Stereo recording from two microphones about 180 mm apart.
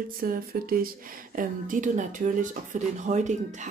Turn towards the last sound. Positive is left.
turn(degrees=-40)  # may be behind; listen again after turning